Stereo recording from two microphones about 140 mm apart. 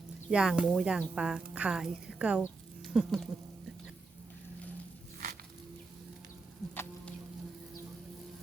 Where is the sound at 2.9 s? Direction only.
5° right (ahead or behind).